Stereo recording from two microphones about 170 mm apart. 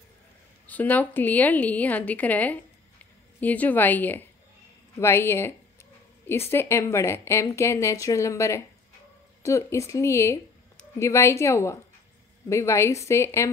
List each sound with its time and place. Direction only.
0.7 s a woman's voice: 10° left (ahead or behind)
6.5 s a woman's voice: 15° left (ahead or behind)